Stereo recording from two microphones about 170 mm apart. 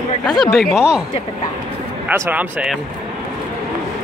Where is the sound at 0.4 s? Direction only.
Centre (ahead or behind).